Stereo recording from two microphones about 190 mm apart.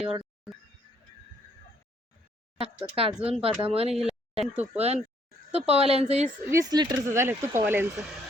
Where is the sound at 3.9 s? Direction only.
Centre (ahead or behind).